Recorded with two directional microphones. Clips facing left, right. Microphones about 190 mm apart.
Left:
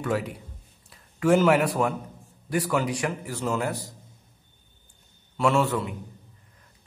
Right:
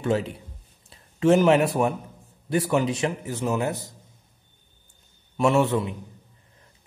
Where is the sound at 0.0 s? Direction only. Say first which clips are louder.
Right 3 dB; 25° right (ahead or behind).